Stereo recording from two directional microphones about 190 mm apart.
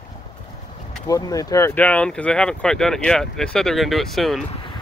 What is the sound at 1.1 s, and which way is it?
Speech, 20° left (ahead or behind).